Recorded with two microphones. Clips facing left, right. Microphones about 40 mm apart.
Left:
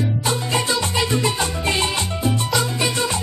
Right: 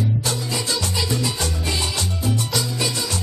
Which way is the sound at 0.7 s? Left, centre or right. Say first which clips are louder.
Left 2 dB; left.